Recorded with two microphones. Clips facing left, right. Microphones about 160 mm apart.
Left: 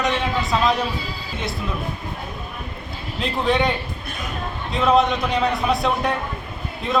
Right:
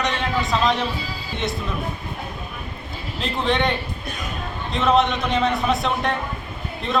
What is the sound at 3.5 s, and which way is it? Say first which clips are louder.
Speech: left 2 dB; 5° left (ahead or behind).